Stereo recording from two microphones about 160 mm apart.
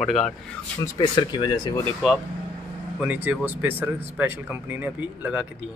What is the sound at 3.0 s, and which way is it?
Speech, 10° right (ahead or behind).